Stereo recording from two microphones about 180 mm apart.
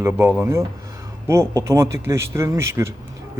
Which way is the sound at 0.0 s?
10° right (ahead or behind).